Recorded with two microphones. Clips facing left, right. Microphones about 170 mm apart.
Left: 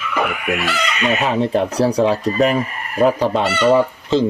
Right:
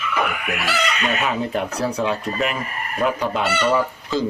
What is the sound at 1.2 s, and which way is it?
Speech, 30° left (ahead or behind).